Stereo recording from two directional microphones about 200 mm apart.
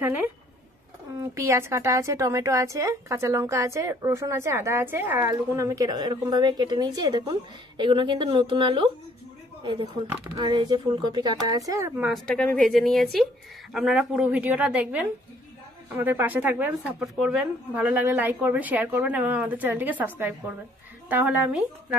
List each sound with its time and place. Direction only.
1.3 s a woman's voice: 15° right (ahead or behind)
12.0 s a woman's voice: centre (ahead or behind)